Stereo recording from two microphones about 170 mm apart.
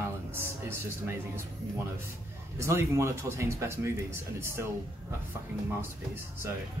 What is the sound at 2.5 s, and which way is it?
Speech, 15° right (ahead or behind).